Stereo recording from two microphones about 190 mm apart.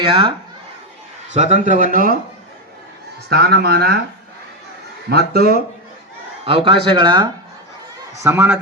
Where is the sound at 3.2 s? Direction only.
60° right (ahead or behind).